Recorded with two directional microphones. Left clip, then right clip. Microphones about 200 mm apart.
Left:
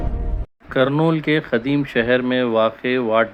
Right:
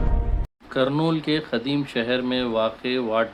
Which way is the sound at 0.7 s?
15° left (ahead or behind).